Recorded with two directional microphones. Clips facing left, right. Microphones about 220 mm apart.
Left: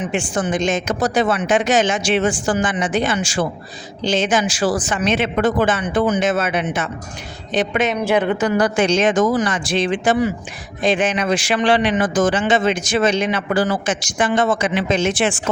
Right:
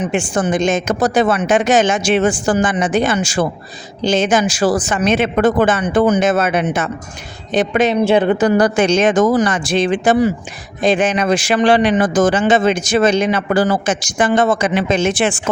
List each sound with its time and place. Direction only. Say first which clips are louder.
0.0 s a man's voice: right 4 dB; 45° right (ahead or behind)